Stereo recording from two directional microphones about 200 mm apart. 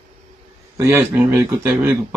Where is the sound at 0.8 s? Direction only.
15° right (ahead or behind).